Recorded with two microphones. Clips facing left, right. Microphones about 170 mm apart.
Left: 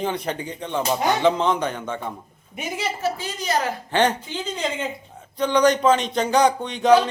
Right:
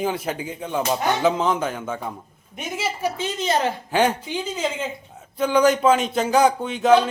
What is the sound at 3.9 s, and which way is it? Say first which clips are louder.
A man's voice: left 1 dB; 10° right (ahead or behind).